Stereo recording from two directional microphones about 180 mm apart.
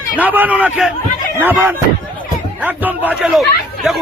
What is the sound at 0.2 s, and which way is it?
A man's voice, 10° right (ahead or behind).